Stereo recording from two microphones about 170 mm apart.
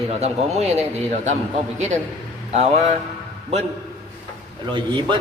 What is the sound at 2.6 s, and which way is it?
Speech, 40° right (ahead or behind).